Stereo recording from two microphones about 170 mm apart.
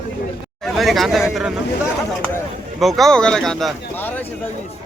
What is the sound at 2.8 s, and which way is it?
Speech, centre (ahead or behind).